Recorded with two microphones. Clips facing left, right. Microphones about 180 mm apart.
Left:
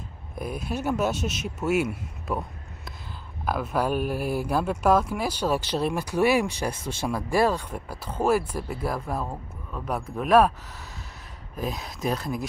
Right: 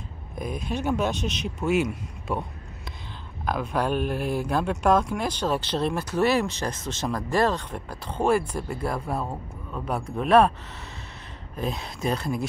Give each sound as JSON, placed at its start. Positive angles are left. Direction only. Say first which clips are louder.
{"t": 0.4, "sound": "speech", "louder": "right 1 dB", "side_deg": 5}
{"t": 3.4, "sound": "speech", "louder": "even", "side_deg": 5}
{"t": 11.5, "sound": "speech", "louder": "right 1 dB", "side_deg": 0}